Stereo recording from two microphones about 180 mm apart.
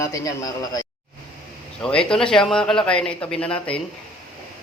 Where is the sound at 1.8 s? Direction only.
5° left (ahead or behind).